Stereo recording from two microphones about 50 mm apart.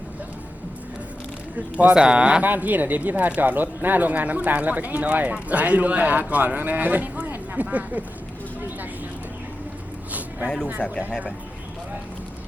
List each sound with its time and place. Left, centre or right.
1.8 s speech: centre
2.4 s speech: right
10.1 s a sound: right